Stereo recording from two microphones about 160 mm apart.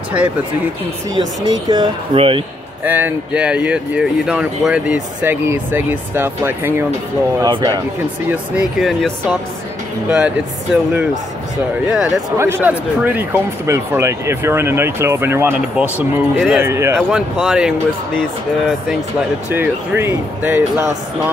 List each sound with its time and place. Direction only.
0.2 s speech: 5° right (ahead or behind)
1.1 s speech: 25° right (ahead or behind)
2.1 s speech: 35° right (ahead or behind)
2.8 s speech: 10° right (ahead or behind)
7.4 s speech: 25° right (ahead or behind)
8.3 s speech: 5° right (ahead or behind)
17.1 s speech: 5° right (ahead or behind)
19.5 s speech: 10° right (ahead or behind)